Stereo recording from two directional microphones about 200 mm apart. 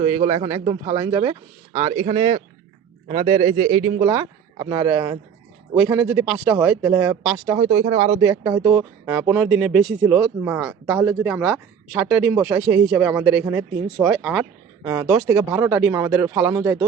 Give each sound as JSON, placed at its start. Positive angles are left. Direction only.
{"t": 0.0, "sound": "a man's voice", "side_deg": -25}
{"t": 4.0, "sound": "speech", "side_deg": -20}
{"t": 7.7, "sound": "a man's voice", "side_deg": -40}
{"t": 8.2, "sound": "speech", "side_deg": -15}